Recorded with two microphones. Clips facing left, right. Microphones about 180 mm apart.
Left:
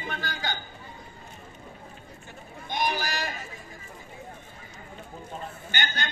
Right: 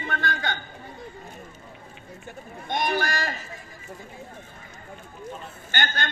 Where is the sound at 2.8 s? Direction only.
60° right (ahead or behind).